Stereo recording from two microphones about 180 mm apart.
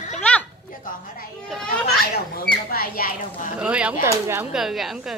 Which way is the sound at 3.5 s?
5° right (ahead or behind).